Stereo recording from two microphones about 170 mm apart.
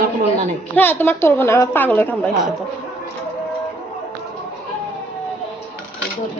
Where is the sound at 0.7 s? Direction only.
10° left (ahead or behind).